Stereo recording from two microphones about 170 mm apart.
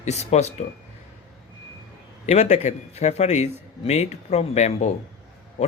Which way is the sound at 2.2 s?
40° left (ahead or behind).